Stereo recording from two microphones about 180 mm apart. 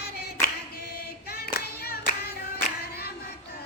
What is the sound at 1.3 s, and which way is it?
Singing, 60° left (ahead or behind).